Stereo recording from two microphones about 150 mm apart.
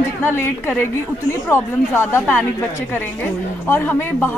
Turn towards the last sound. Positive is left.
turn(degrees=15)  # may be behind; listen again after turning